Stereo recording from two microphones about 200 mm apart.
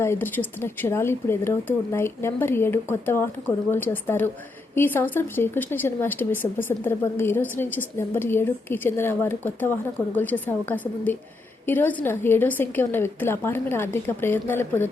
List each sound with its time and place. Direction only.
0.0 s speech: 10° left (ahead or behind)